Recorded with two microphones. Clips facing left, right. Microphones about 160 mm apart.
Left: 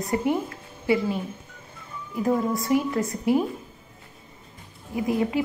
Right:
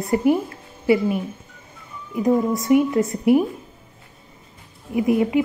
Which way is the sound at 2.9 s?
25° right (ahead or behind).